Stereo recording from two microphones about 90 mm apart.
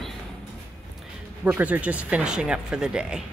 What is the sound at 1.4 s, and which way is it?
Speech, 15° right (ahead or behind).